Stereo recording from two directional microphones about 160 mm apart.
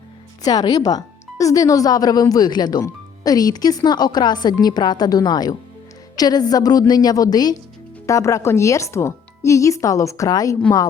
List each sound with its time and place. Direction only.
0.4 s speech: 25° left (ahead or behind)